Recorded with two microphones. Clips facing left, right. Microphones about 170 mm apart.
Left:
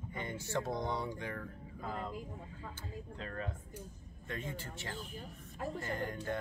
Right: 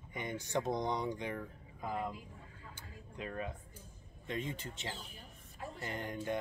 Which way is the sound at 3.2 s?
15° right (ahead or behind).